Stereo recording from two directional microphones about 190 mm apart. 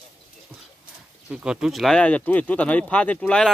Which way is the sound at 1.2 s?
5° right (ahead or behind).